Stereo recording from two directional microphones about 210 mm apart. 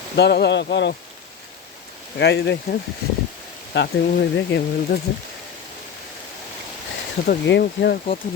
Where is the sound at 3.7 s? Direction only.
55° left (ahead or behind).